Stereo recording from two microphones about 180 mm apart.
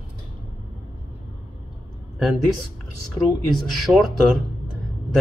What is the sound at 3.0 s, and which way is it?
Speech, centre (ahead or behind).